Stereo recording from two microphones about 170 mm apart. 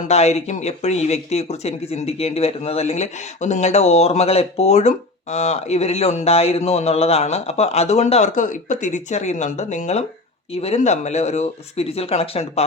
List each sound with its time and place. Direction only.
0.1 s speech: 40° left (ahead or behind)